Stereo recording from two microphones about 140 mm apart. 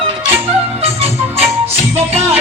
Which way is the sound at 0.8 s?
45° right (ahead or behind).